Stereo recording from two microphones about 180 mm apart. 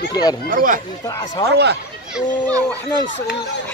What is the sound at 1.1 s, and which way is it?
Speech, 20° left (ahead or behind).